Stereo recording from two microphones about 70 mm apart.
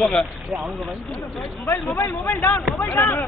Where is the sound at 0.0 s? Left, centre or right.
Centre.